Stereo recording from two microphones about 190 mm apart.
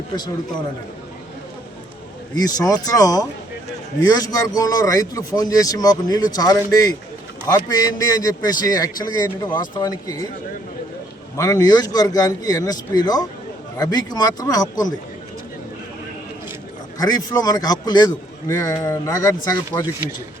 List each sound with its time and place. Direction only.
2.3 s speech: 20° left (ahead or behind)
11.3 s speech: 20° left (ahead or behind)
17.0 s speech: 20° left (ahead or behind)